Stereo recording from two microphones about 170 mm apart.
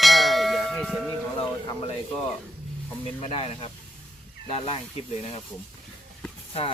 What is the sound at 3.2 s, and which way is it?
Speech, 35° left (ahead or behind).